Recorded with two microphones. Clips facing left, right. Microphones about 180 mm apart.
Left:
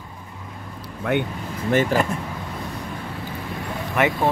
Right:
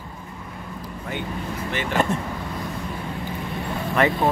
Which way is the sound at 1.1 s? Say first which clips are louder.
Left 9 dB; 65° left (ahead or behind).